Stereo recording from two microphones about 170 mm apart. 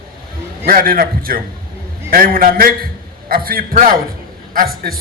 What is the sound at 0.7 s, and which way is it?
A man's voice, 60° right (ahead or behind).